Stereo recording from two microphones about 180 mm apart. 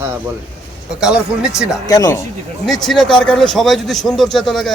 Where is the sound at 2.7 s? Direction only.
Centre (ahead or behind).